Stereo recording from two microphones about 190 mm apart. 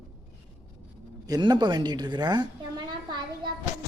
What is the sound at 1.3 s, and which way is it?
A woman's voice, 25° right (ahead or behind).